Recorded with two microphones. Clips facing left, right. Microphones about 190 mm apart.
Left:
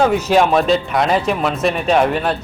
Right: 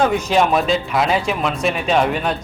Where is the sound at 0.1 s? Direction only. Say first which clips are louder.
Left 2 dB; 5° left (ahead or behind).